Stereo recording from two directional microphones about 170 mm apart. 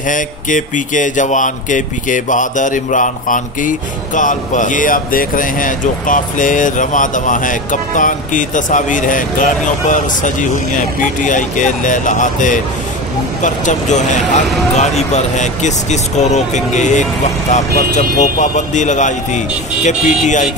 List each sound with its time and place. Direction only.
0.1 s speech: 50° left (ahead or behind)